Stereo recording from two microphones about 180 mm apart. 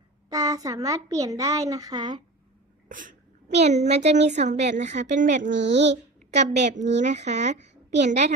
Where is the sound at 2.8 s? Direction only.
45° right (ahead or behind).